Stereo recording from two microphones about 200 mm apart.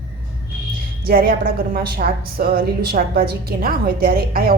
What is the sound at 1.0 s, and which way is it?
A woman's voice, 45° right (ahead or behind).